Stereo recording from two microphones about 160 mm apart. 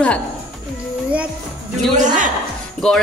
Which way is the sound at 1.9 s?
50° right (ahead or behind).